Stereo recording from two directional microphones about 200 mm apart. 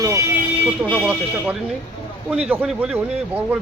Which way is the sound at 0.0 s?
15° right (ahead or behind).